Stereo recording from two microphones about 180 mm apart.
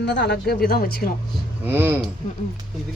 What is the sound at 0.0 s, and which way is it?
Speech, 70° left (ahead or behind).